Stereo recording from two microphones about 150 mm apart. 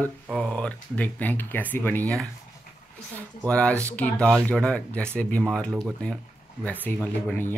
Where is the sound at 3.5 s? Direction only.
10° left (ahead or behind).